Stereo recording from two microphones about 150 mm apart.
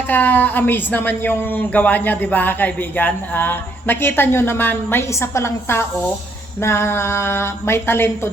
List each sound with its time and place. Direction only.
0.1 s a woman's voice: 15° left (ahead or behind)